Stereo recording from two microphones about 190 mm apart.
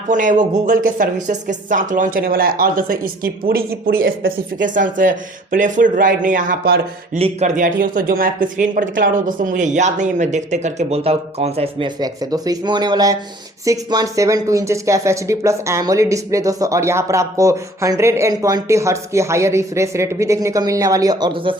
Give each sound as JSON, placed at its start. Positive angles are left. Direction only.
{"t": 0.1, "sound": "speech", "side_deg": -40}
{"t": 7.2, "sound": "speech", "side_deg": -35}